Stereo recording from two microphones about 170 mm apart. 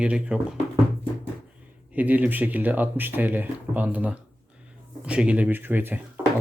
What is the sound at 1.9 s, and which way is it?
Speech, 10° right (ahead or behind).